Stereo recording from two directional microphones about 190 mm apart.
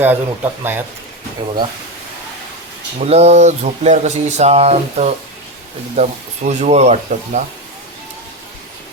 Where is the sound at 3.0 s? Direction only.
35° right (ahead or behind).